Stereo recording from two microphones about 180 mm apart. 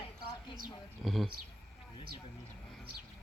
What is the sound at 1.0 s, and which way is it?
Speech, centre (ahead or behind).